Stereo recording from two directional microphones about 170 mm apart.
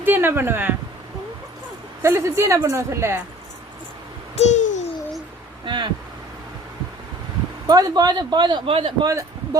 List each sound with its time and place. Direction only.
0.0 s speech: 10° right (ahead or behind)
2.0 s a woman's voice: 15° right (ahead or behind)
4.4 s babbling: 45° left (ahead or behind)
5.6 s speech: 30° right (ahead or behind)
7.7 s a man's voice: 20° right (ahead or behind)